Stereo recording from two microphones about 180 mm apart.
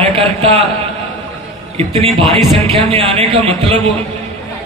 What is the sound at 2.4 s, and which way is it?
Speech, 35° right (ahead or behind).